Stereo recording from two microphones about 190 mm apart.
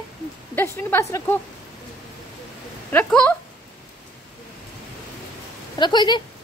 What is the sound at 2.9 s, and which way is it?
Speech, 5° left (ahead or behind).